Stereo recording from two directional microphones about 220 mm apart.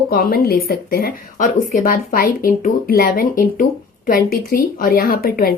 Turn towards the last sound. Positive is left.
turn(degrees=40)  # may be behind; listen again after turning